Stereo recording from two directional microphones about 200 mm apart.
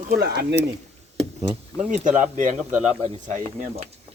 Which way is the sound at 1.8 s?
40° right (ahead or behind).